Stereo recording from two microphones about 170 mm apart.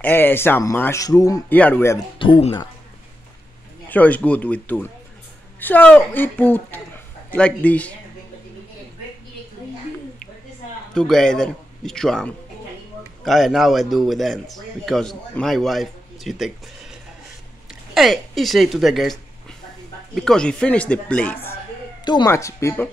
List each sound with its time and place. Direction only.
0.0 s speech: 10° left (ahead or behind)
2.1 s speech: 30° left (ahead or behind)
3.9 s speech: 10° left (ahead or behind)
11.0 s a man's voice: 5° left (ahead or behind)
20.2 s speech: 5° left (ahead or behind)
22.0 s speech: 25° left (ahead or behind)